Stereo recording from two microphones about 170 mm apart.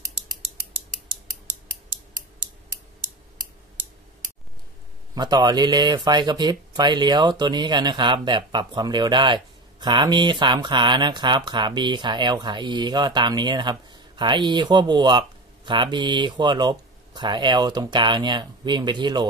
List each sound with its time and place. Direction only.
5.1 s speech: 25° right (ahead or behind)